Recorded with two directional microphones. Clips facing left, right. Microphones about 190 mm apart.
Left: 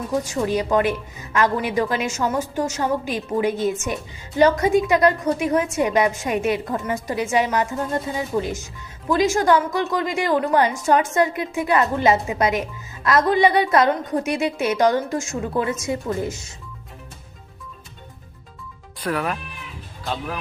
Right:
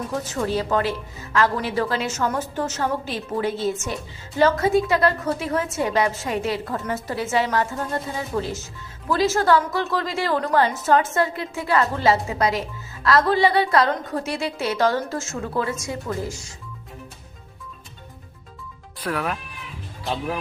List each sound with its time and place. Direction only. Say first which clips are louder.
0.1 s a woman's voice: left 4 dB; 15° left (ahead or behind)
18.9 s speech: left 2 dB; centre (ahead or behind)